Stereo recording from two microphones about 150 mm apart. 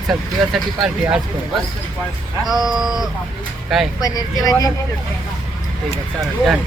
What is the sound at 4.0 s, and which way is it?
Speech, 25° left (ahead or behind).